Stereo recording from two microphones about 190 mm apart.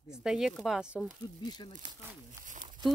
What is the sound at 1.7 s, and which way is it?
Speech, 40° right (ahead or behind).